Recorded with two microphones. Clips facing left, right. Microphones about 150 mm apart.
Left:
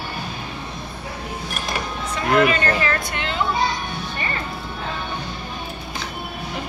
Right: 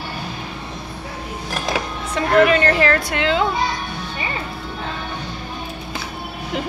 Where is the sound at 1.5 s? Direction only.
75° right (ahead or behind).